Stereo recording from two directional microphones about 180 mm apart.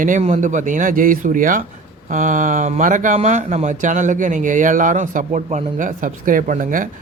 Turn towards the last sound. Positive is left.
turn(degrees=-50)  # may be behind; listen again after turning